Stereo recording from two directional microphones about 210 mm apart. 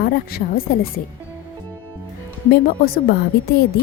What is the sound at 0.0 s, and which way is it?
A woman's voice, 45° left (ahead or behind).